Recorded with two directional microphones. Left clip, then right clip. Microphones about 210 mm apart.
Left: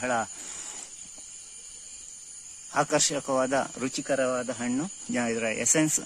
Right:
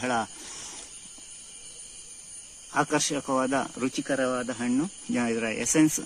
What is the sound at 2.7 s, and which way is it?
Speech, 55° left (ahead or behind).